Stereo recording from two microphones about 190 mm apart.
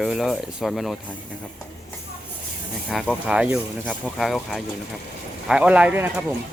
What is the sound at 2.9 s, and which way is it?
Speech, centre (ahead or behind).